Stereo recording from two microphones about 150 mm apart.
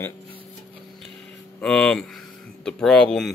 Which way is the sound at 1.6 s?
5° left (ahead or behind).